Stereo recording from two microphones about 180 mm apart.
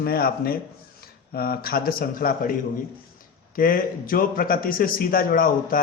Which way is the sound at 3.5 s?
50° left (ahead or behind).